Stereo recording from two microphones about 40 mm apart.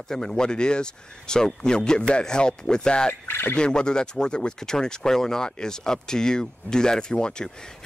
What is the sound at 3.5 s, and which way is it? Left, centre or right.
Speech, left.